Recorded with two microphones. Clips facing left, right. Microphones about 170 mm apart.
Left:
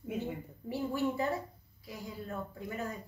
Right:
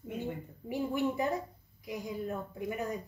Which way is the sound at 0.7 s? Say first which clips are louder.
Right 1 dB; 15° right (ahead or behind).